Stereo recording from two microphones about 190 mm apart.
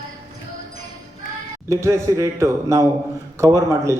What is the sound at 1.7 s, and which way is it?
A man's voice, 15° right (ahead or behind).